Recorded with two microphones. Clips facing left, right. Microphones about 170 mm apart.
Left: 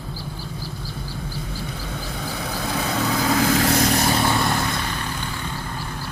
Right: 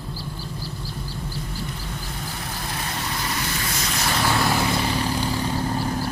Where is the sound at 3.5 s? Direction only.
75° left (ahead or behind).